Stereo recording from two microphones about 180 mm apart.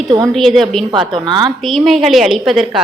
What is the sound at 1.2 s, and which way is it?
Speech, 25° right (ahead or behind).